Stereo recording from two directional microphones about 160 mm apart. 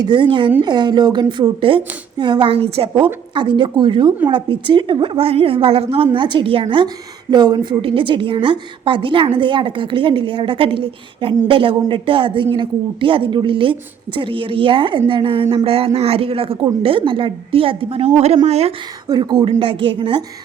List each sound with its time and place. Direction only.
0.0 s a woman's voice: 30° right (ahead or behind)
19.0 s a woman's voice: 25° right (ahead or behind)